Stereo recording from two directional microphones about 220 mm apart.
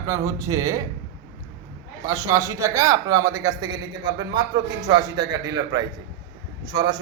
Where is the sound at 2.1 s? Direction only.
15° right (ahead or behind).